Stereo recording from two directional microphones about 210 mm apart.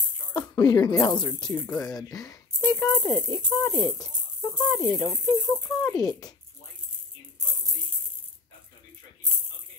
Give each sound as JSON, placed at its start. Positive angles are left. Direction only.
{"t": 0.3, "sound": "speech", "side_deg": 20}